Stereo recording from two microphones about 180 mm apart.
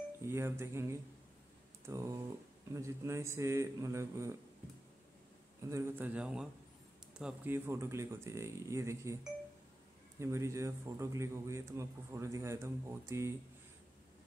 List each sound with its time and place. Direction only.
0.2 s a man's voice: 15° right (ahead or behind)
5.7 s a man's voice: 15° right (ahead or behind)